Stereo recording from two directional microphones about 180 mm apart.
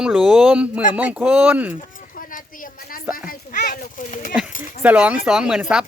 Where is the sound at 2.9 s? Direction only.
50° left (ahead or behind).